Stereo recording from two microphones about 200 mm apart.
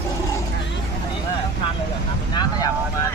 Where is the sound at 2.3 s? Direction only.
20° left (ahead or behind).